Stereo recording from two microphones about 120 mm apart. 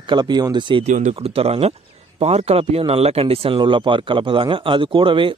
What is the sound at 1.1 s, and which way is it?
Speech, 55° right (ahead or behind).